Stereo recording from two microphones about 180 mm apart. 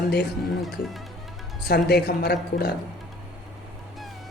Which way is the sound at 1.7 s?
60° left (ahead or behind).